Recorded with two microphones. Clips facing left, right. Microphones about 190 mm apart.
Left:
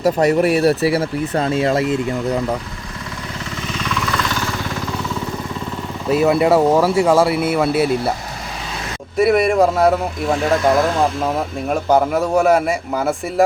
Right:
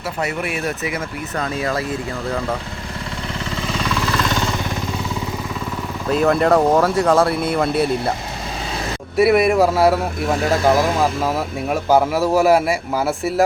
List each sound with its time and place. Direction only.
0.0 s speech: 40° left (ahead or behind); by 2.4 s 20° left (ahead or behind)
3.8 s vehicle: 30° right (ahead or behind)
6.1 s speech: 5° left (ahead or behind)
9.1 s speech: 5° right (ahead or behind)